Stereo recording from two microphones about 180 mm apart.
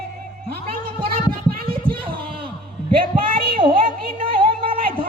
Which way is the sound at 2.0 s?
30° right (ahead or behind).